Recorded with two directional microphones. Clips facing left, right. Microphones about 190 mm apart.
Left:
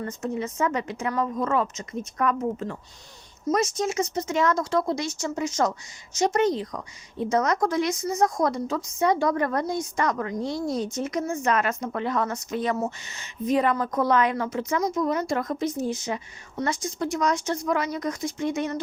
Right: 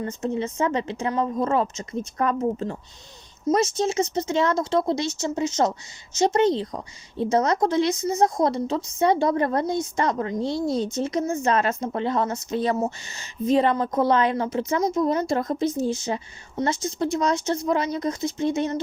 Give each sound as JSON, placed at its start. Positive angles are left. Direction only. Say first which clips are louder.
{"t": 0.0, "sound": "a woman's voice", "louder": "right 3 dB", "side_deg": -25}